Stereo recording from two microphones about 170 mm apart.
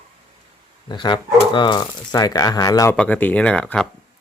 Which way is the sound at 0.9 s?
25° left (ahead or behind).